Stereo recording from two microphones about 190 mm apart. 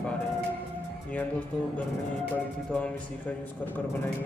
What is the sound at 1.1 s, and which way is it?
A man's voice, 5° left (ahead or behind).